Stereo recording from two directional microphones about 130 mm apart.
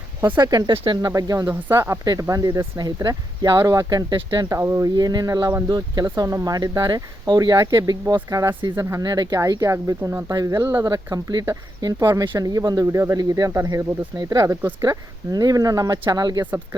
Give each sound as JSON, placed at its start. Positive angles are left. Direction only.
{"t": 0.3, "sound": "speech", "side_deg": -30}
{"t": 1.1, "sound": "speech", "side_deg": -25}